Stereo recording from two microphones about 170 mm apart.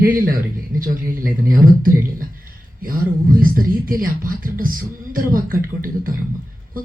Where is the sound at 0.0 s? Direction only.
55° right (ahead or behind).